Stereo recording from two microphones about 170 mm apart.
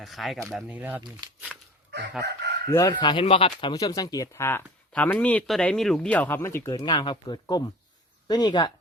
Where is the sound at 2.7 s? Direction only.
25° left (ahead or behind).